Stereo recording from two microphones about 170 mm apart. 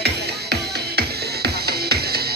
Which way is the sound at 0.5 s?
70° right (ahead or behind).